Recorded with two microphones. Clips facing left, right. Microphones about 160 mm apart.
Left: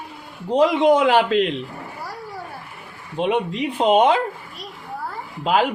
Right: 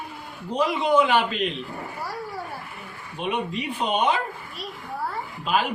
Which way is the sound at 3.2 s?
90° left.